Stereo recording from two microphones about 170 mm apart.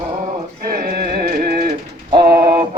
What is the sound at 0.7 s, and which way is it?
Music, 65° right (ahead or behind).